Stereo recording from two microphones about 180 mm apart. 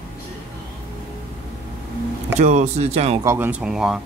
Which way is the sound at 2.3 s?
40° right (ahead or behind).